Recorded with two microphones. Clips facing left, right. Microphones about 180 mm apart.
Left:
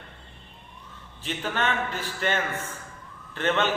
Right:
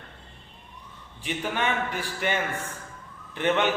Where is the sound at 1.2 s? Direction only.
15° right (ahead or behind).